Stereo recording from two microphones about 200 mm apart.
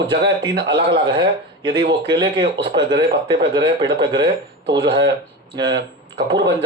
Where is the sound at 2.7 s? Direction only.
60° right (ahead or behind).